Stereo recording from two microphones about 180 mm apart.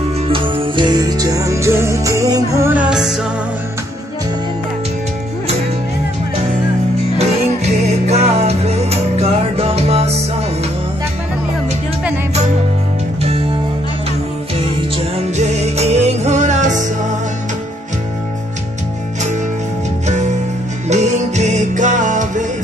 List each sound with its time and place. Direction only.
0.3 s music: 30° right (ahead or behind); by 3.2 s 5° right (ahead or behind)
7.2 s music: 35° right (ahead or behind)
15.3 s music: 40° right (ahead or behind)
20.1 s music: 40° right (ahead or behind)